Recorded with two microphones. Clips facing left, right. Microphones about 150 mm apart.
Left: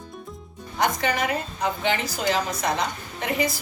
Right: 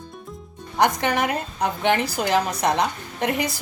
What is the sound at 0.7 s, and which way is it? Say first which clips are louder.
A woman's voice: right 3 dB; 65° right (ahead or behind).